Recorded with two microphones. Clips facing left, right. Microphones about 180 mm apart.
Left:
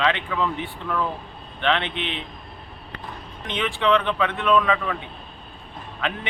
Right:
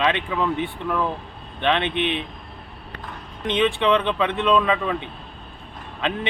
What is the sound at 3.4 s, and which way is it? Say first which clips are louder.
Speech: right 4 dB; 20° right (ahead or behind).